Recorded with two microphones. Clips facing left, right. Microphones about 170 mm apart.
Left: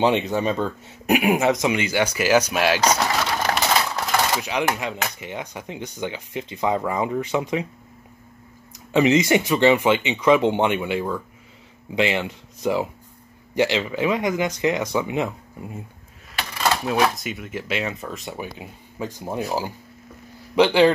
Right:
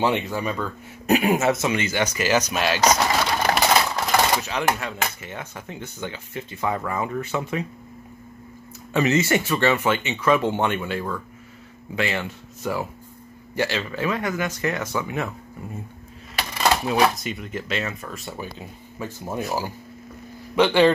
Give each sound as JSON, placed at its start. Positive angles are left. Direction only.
{"t": 0.0, "sound": "speech", "side_deg": 20}
{"t": 3.3, "sound": "bird", "side_deg": -10}
{"t": 4.4, "sound": "speech", "side_deg": 15}
{"t": 8.9, "sound": "speech", "side_deg": 15}
{"t": 16.3, "sound": "speech", "side_deg": 0}